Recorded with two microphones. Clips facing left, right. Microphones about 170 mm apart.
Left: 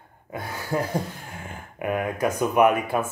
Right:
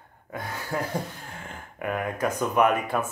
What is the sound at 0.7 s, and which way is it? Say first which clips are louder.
Speech: left 4 dB; 20° left (ahead or behind).